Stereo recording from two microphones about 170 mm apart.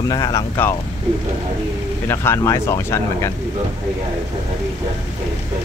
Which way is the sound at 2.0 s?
15° left (ahead or behind).